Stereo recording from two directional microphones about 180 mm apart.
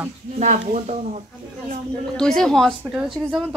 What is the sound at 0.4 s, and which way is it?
Speech, 40° right (ahead or behind).